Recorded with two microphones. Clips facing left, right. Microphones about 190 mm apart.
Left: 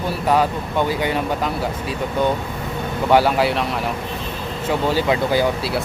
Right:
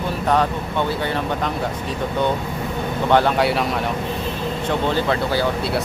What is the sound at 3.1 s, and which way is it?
Speech, 5° left (ahead or behind).